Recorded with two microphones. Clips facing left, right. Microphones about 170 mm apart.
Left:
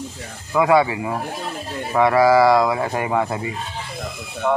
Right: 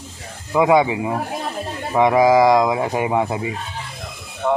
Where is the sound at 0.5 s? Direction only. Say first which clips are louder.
Right 1 dB; 20° right (ahead or behind).